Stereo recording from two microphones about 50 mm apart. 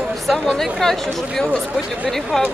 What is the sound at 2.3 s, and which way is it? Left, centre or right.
Speech, centre.